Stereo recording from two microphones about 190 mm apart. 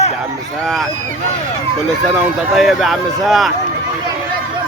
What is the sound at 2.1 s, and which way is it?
Speech, centre (ahead or behind).